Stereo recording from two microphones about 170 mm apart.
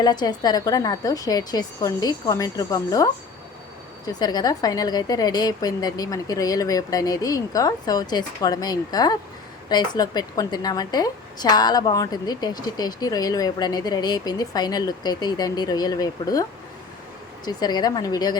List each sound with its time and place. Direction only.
0.0 s a woman's voice: 25° left (ahead or behind)